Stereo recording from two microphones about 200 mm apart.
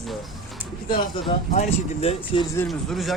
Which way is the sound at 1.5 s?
35° left (ahead or behind).